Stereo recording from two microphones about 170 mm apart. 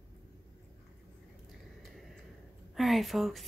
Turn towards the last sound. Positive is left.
turn(degrees=0)  # may be behind; listen again after turning